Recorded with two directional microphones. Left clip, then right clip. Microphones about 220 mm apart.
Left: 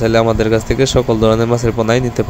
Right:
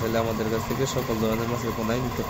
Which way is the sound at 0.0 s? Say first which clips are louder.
Left 13 dB; 40° left (ahead or behind).